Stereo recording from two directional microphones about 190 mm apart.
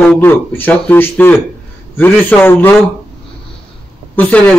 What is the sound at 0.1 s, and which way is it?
A man's voice, 10° left (ahead or behind).